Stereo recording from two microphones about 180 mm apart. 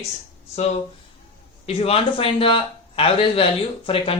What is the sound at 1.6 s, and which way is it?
Speech, 35° left (ahead or behind).